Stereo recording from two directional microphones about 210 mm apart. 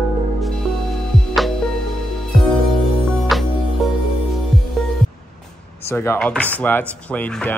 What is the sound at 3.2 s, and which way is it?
Music, centre (ahead or behind).